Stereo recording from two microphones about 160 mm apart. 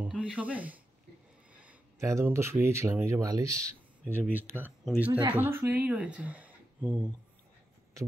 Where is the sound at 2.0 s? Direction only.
20° right (ahead or behind).